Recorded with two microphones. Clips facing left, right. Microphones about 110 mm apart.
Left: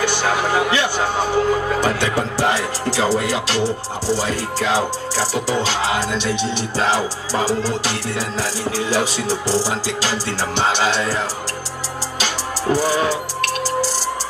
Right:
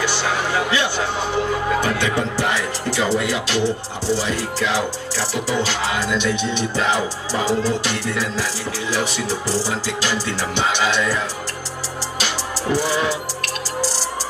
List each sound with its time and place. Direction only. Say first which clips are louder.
0.0 s speech: left 3 dB; 50° left (ahead or behind)
12.7 s speech: left 2 dB; 45° left (ahead or behind)